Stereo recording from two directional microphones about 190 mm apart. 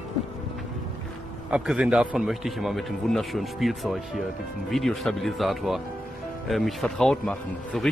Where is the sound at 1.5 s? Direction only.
5° right (ahead or behind).